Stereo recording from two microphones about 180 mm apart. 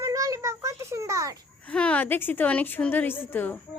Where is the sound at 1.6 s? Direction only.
5° left (ahead or behind).